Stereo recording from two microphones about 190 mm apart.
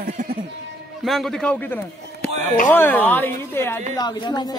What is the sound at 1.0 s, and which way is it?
A man's voice, centre (ahead or behind).